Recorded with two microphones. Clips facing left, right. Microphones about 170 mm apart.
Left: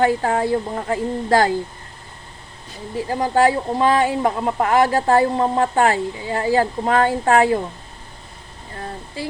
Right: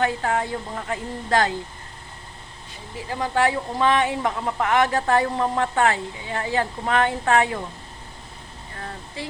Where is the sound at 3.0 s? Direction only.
35° left (ahead or behind).